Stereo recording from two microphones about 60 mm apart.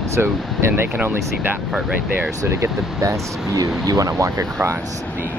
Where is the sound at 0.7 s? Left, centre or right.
Right.